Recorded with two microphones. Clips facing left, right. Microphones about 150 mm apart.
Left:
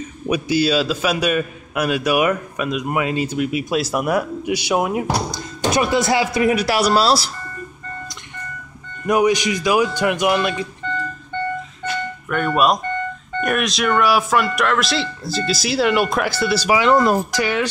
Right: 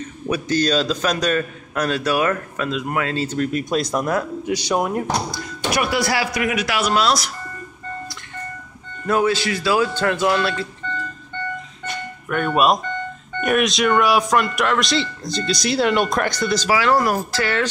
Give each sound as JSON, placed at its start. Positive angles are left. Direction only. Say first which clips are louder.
{"t": 0.3, "sound": "a man's voice", "louder": "left 2 dB", "side_deg": 10}
{"t": 5.7, "sound": "speech", "louder": "left 3 dB", "side_deg": 20}
{"t": 9.0, "sound": "a man's voice", "louder": "left 2 dB", "side_deg": 15}
{"t": 11.8, "sound": "a sound", "louder": "left 5 dB", "side_deg": 0}
{"t": 12.5, "sound": "speech", "louder": "even", "side_deg": 0}